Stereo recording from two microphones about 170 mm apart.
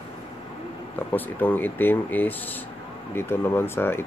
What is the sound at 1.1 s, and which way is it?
Speech, 10° left (ahead or behind).